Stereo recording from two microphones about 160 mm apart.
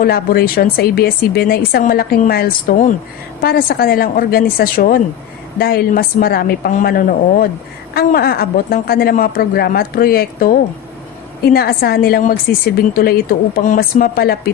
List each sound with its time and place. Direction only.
0.0 s a woman's voice: 65° left (ahead or behind)
3.4 s a woman's voice: 65° left (ahead or behind)